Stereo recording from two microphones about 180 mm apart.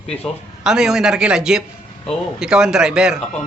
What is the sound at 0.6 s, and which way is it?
Speech, 5° right (ahead or behind).